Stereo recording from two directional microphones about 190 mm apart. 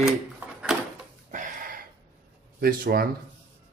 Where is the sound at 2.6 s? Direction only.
50° right (ahead or behind).